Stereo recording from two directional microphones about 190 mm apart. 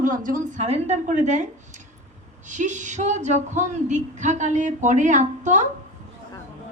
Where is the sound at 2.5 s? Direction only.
40° right (ahead or behind).